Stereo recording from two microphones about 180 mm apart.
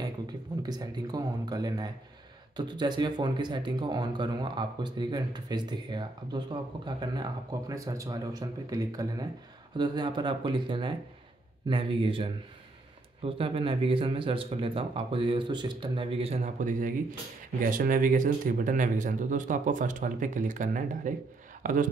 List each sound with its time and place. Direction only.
0.0 s a man's voice: 20° right (ahead or behind); by 21.8 s 45° right (ahead or behind)